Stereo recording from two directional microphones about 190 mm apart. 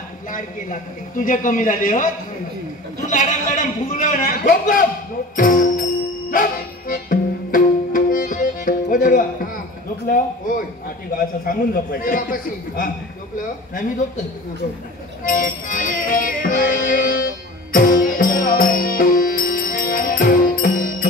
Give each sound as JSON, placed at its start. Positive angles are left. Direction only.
{"t": 0.3, "sound": "a man's voice", "side_deg": 45}
{"t": 6.3, "sound": "music", "side_deg": 45}
{"t": 10.0, "sound": "a man's voice", "side_deg": 50}
{"t": 15.2, "sound": "music", "side_deg": 45}